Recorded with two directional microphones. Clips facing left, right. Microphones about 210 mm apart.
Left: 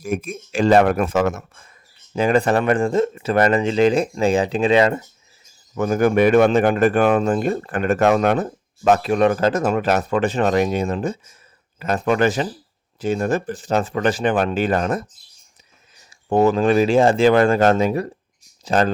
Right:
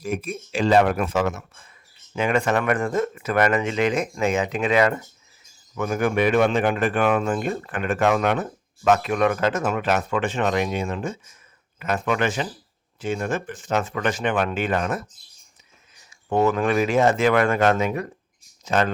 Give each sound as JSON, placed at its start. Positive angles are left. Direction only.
{"t": 0.0, "sound": "speech", "side_deg": 45}
{"t": 2.1, "sound": "a man's voice", "side_deg": 35}
{"t": 5.7, "sound": "a man's voice", "side_deg": 35}
{"t": 16.0, "sound": "a man's voice", "side_deg": 30}